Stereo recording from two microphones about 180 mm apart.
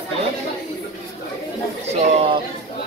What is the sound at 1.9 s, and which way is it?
Speech, 35° right (ahead or behind).